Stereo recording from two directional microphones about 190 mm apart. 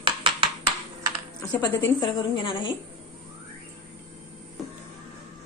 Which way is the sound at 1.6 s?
25° left (ahead or behind).